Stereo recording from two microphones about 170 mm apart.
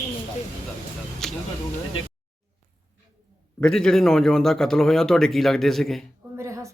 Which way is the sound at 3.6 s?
5° left (ahead or behind).